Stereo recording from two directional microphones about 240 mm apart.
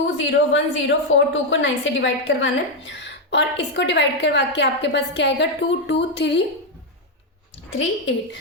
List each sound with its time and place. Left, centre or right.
0.2 s a woman's voice: left
7.7 s a woman's voice: left